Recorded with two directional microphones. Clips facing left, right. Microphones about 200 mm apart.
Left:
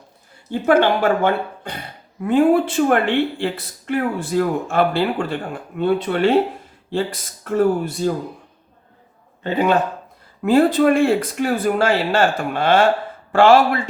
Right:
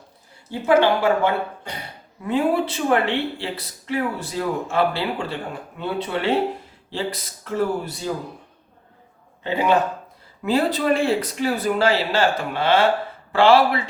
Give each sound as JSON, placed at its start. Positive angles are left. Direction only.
{"t": 0.6, "sound": "speech", "side_deg": 55}
{"t": 10.4, "sound": "speech", "side_deg": 50}